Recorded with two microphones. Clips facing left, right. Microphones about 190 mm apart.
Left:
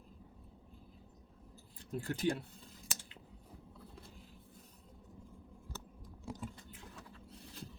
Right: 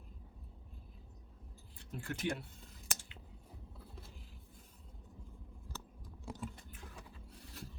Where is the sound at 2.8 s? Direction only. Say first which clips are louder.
Right 1 dB; 50° right (ahead or behind).